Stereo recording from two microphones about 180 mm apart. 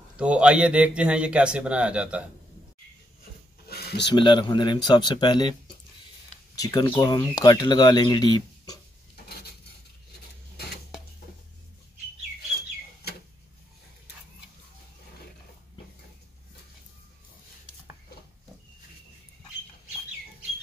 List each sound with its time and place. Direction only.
0.2 s speech: 5° right (ahead or behind)
3.6 s a sound: 60° left (ahead or behind)
4.1 s speech: 25° left (ahead or behind)